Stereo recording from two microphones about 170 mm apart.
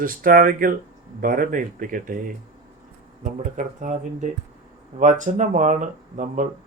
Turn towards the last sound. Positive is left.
turn(degrees=-50)  # may be behind; listen again after turning